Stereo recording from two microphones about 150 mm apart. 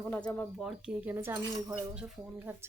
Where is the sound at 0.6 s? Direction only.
5° right (ahead or behind).